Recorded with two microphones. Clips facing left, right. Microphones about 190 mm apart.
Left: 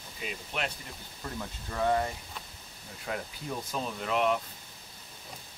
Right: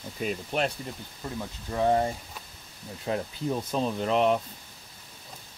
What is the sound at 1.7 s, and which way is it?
Speech, 25° right (ahead or behind).